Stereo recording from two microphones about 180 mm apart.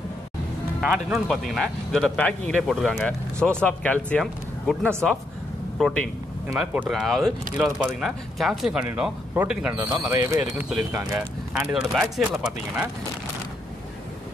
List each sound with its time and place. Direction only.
0.7 s speech: centre (ahead or behind)
10.4 s speech: 5° right (ahead or behind)